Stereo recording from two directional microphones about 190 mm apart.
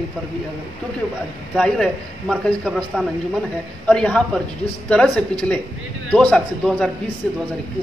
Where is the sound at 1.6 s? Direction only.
5° left (ahead or behind).